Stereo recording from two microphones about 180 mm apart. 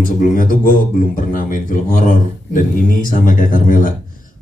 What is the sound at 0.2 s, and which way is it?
Speech, 50° left (ahead or behind).